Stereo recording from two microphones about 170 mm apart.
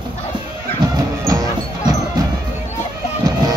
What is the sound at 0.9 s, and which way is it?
Music, 20° right (ahead or behind).